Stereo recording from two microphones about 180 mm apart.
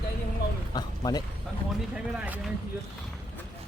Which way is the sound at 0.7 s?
20° left (ahead or behind).